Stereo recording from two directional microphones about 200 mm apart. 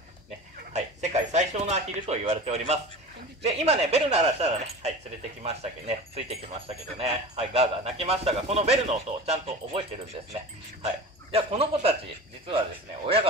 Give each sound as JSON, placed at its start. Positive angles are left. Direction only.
{"t": 0.7, "sound": "a sound", "side_deg": -35}
{"t": 3.4, "sound": "a man's voice", "side_deg": -30}
{"t": 11.3, "sound": "speech", "side_deg": -30}